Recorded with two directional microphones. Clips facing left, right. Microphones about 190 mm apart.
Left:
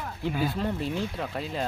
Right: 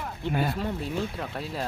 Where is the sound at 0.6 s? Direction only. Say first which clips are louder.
Left 1 dB; centre (ahead or behind).